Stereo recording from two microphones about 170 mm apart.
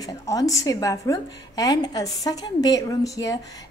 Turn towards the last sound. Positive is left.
turn(degrees=20)  # may be behind; listen again after turning